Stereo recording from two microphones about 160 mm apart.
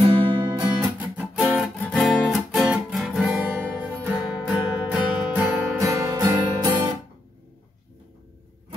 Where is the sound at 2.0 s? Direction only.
Centre (ahead or behind).